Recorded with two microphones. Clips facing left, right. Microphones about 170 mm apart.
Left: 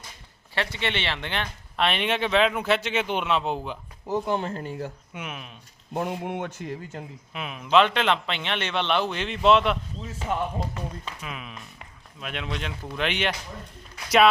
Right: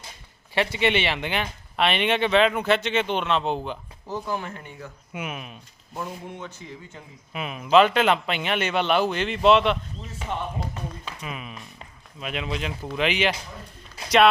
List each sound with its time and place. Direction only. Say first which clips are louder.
0.5 s speech: right 6 dB; 15° right (ahead or behind); by 3.8 s centre (ahead or behind)
4.0 s speech: left 4 dB; 25° left (ahead or behind)
5.1 s speech: right 4 dB; 5° right (ahead or behind)
5.9 s speech: left 6 dB; 65° left (ahead or behind)
7.3 s speech: right 3 dB; centre (ahead or behind)
11.0 s speech: right 2 dB; centre (ahead or behind)